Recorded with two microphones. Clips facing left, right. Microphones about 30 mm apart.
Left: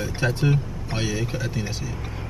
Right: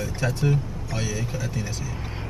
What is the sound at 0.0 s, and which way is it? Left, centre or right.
Speech, left.